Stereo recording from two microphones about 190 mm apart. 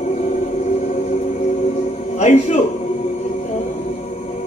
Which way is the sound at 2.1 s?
35° left (ahead or behind).